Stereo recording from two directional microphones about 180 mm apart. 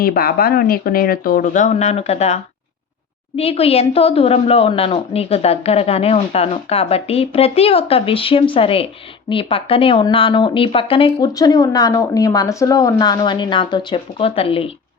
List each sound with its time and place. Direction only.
0.0 s a woman's voice: 55° left (ahead or behind); by 14.7 s 30° left (ahead or behind)